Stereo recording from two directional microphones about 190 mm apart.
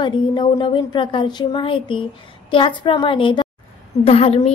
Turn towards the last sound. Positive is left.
turn(degrees=30)  # may be behind; listen again after turning